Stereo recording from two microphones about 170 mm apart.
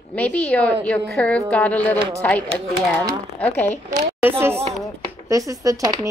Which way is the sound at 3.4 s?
10° left (ahead or behind).